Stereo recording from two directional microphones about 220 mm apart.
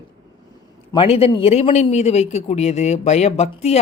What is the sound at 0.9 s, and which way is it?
Speech, 25° left (ahead or behind).